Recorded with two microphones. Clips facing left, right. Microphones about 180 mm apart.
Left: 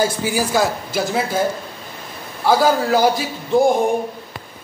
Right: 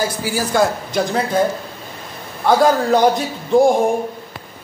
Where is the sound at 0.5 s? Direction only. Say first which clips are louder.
Right 2 dB; 5° left (ahead or behind).